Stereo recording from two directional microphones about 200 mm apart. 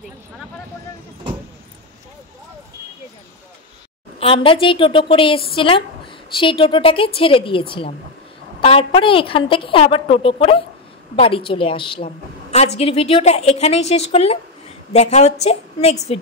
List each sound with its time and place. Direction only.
4.2 s a woman's voice: 25° left (ahead or behind)